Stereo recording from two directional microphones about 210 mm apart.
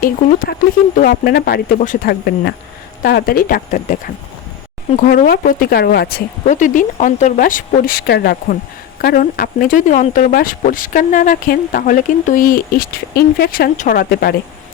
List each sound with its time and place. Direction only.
0.0 s speech: 40° left (ahead or behind)